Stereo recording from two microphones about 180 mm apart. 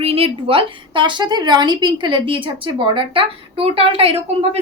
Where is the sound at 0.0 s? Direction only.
30° right (ahead or behind).